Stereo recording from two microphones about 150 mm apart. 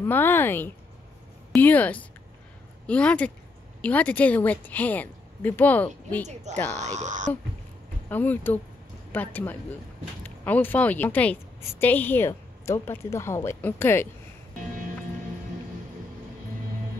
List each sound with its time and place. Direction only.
0.0 s a woman's voice: 15° left (ahead or behind)
6.2 s speech: 50° right (ahead or behind)
8.1 s a woman's voice: 10° left (ahead or behind)